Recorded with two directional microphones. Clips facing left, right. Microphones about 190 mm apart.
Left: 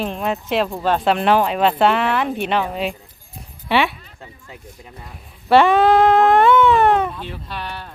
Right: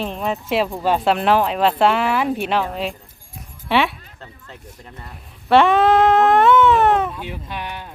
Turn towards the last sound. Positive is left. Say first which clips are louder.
# even
turn(degrees=-15)  # may be behind; listen again after turning